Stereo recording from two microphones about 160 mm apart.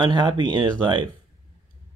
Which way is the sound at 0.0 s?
30° right (ahead or behind).